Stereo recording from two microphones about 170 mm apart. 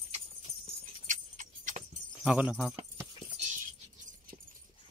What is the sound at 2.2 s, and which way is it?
Speech, 5° right (ahead or behind).